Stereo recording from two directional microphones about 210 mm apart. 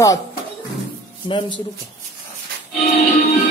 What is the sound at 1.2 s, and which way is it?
Speech, 20° left (ahead or behind).